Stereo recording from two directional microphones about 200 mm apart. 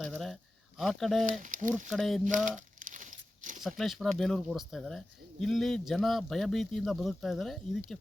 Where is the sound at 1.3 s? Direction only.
40° right (ahead or behind).